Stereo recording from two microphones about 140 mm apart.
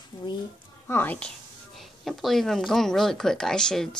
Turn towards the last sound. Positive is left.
turn(degrees=5)  # may be behind; listen again after turning